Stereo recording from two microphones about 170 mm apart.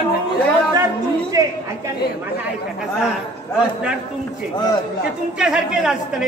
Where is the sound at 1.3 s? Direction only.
20° right (ahead or behind).